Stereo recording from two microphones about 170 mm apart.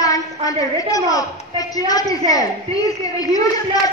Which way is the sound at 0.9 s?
20° left (ahead or behind).